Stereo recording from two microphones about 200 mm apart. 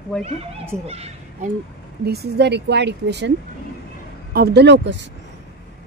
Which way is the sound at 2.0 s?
55° right (ahead or behind).